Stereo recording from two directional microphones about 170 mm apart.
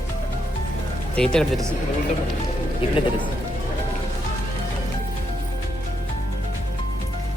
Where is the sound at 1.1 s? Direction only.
5° left (ahead or behind).